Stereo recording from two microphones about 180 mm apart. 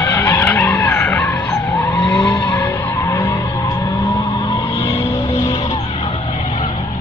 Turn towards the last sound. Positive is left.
turn(degrees=15)  # may be behind; listen again after turning